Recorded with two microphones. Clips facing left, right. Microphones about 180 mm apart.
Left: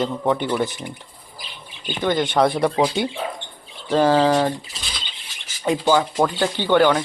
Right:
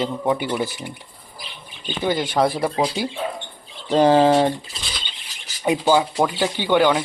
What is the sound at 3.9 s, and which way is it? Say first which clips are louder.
Bird: right 2 dB; 20° right (ahead or behind).